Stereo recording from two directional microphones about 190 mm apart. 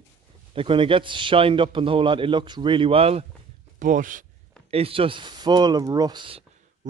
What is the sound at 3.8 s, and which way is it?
Speech, 45° right (ahead or behind).